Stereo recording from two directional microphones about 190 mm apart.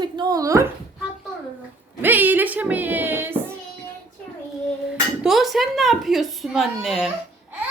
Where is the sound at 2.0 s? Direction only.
10° right (ahead or behind).